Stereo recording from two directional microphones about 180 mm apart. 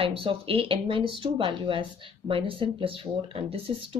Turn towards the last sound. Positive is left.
turn(degrees=-30)  # may be behind; listen again after turning